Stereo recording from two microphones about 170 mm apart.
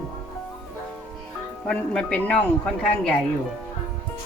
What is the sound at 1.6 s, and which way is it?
Speech, 5° left (ahead or behind).